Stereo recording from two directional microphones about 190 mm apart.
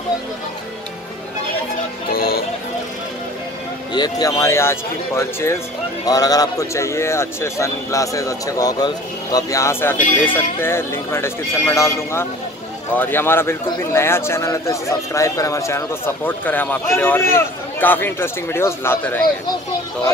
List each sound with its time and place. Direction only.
2.0 s music: 50° left (ahead or behind)
3.9 s speech: 20° left (ahead or behind)